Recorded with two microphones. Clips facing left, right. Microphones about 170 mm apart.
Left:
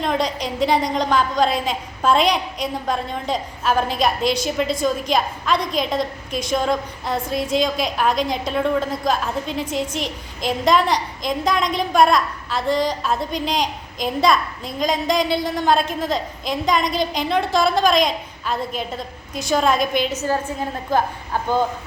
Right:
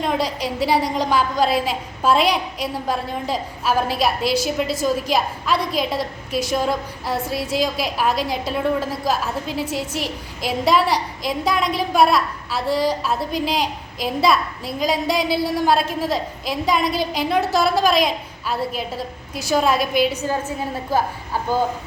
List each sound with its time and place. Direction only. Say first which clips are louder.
0.0 s a woman's voice: even; 5° right (ahead or behind)